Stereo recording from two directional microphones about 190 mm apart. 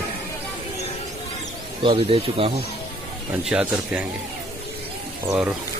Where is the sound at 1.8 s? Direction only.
30° right (ahead or behind).